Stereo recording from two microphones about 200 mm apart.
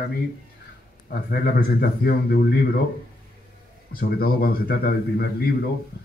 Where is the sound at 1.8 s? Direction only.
50° left (ahead or behind).